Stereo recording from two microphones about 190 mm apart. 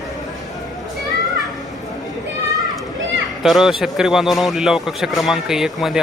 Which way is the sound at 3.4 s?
Centre (ahead or behind).